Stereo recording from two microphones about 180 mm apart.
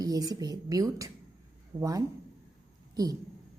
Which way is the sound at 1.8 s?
20° right (ahead or behind).